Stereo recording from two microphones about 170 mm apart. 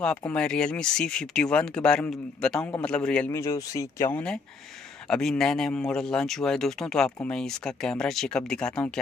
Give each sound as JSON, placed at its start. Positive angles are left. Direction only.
{"t": 0.0, "sound": "speech", "side_deg": 5}
{"t": 3.3, "sound": "speech", "side_deg": 20}
{"t": 4.1, "sound": "speech", "side_deg": 5}